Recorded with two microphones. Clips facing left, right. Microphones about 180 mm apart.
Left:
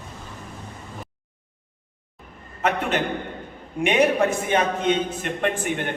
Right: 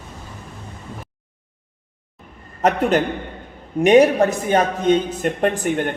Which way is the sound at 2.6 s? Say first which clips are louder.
Right 6 dB; 40° right (ahead or behind).